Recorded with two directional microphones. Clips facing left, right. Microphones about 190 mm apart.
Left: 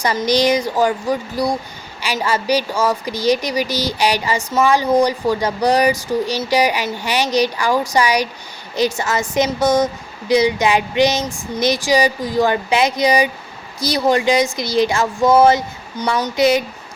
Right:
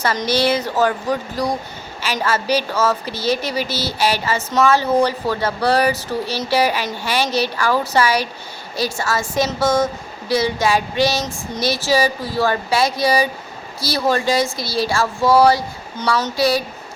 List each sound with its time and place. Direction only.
0.0 s a woman's voice: 15° left (ahead or behind)